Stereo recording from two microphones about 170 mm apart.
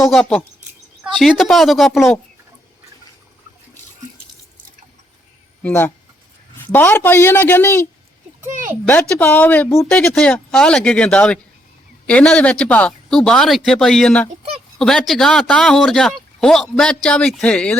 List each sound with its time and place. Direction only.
0.1 s speech: centre (ahead or behind)
5.6 s speech: 10° left (ahead or behind)
8.4 s speech: 50° right (ahead or behind)
8.9 s speech: 10° left (ahead or behind)